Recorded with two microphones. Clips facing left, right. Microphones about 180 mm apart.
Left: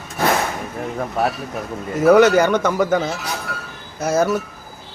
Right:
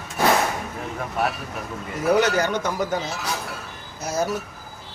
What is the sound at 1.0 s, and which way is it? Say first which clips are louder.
Speech: left 4 dB; 40° left (ahead or behind).